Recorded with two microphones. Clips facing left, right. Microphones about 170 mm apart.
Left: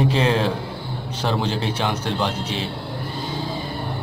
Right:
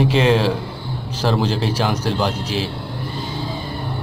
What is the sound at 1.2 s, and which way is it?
A man's voice, 5° right (ahead or behind).